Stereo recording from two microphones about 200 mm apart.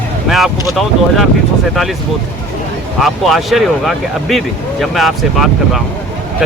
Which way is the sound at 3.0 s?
Centre (ahead or behind).